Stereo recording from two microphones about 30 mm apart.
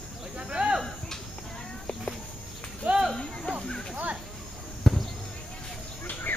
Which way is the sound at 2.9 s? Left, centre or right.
Right.